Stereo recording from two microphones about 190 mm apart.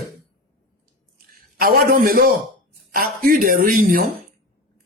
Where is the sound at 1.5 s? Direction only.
50° right (ahead or behind).